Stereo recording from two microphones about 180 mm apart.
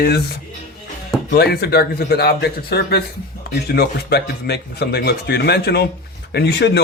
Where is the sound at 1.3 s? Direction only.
60° left (ahead or behind).